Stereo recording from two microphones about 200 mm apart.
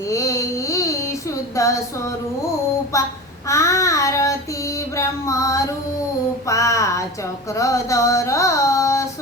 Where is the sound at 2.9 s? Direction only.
15° left (ahead or behind).